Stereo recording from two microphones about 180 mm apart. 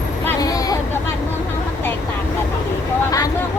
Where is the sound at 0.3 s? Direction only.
20° left (ahead or behind).